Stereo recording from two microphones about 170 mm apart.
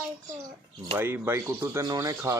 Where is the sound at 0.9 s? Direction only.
15° right (ahead or behind).